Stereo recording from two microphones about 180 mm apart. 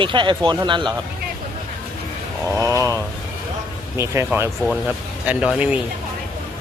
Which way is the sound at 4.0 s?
15° right (ahead or behind).